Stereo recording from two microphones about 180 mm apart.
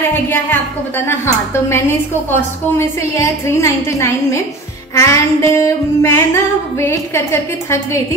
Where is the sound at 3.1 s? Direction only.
15° left (ahead or behind).